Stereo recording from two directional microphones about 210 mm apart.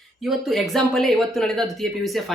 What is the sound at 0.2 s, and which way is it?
Speech, centre (ahead or behind).